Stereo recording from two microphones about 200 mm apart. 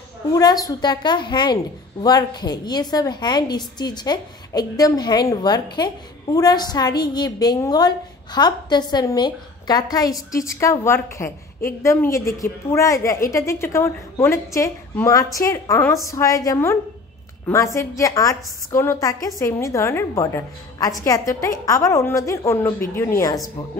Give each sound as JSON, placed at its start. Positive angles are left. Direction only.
{"t": 0.3, "sound": "a woman's voice", "side_deg": 20}
{"t": 17.7, "sound": "a woman's voice", "side_deg": 15}